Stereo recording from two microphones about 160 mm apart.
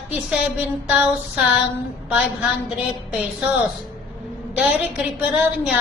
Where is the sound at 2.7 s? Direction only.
5° right (ahead or behind).